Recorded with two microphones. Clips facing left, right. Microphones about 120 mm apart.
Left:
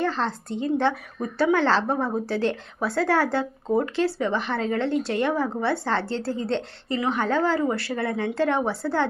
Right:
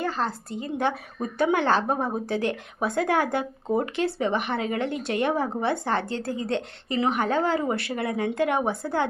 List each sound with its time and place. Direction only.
0.0 s a woman's voice: 10° right (ahead or behind)
0.9 s speech: 20° right (ahead or behind)